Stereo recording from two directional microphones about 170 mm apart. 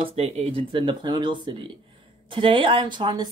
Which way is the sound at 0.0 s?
35° right (ahead or behind).